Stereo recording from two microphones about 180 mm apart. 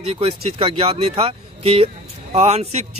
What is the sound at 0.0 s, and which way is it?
Speech, 35° right (ahead or behind).